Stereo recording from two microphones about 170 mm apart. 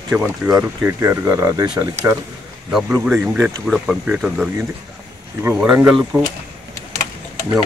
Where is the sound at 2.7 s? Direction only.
5° right (ahead or behind).